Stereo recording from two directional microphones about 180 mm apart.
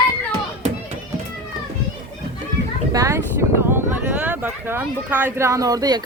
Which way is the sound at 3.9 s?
10° right (ahead or behind).